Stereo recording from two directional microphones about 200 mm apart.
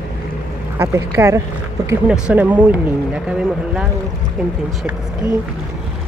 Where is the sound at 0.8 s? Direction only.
15° right (ahead or behind).